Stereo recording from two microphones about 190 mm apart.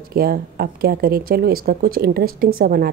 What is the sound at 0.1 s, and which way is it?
Speech, 55° right (ahead or behind).